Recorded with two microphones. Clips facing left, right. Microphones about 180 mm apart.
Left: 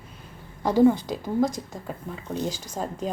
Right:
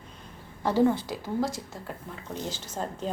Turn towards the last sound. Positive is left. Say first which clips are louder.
# left 3 dB
turn(degrees=10)  # may be behind; listen again after turning